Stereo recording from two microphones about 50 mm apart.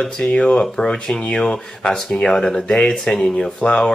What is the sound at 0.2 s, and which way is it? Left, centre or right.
Speech, left.